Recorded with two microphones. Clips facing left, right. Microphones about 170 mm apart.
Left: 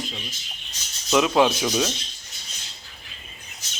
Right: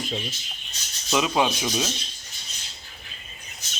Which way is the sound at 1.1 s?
Centre (ahead or behind).